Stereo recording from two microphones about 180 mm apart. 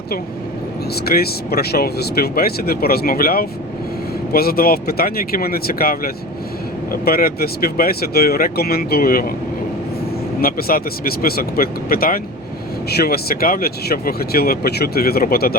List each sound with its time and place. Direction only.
1.0 s speech: 60° left (ahead or behind)
10.4 s speech: 55° left (ahead or behind)